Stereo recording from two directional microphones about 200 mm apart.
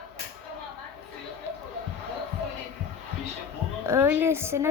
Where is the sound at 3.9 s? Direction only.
10° right (ahead or behind).